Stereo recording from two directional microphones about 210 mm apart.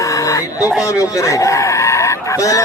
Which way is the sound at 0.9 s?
15° left (ahead or behind).